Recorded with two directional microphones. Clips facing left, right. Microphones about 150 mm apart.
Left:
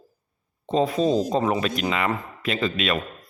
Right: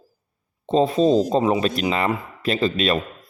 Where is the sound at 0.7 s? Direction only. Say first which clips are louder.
Right 4 dB; 25° right (ahead or behind).